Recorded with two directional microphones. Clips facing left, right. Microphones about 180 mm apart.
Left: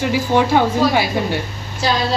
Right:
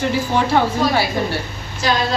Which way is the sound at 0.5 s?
15° left (ahead or behind).